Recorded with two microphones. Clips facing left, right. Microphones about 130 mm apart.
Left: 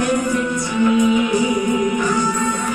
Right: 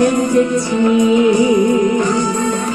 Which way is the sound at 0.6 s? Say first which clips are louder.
Right 3 dB; 20° right (ahead or behind).